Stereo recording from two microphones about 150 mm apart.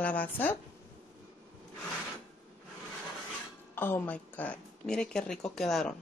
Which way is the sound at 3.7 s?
15° left (ahead or behind).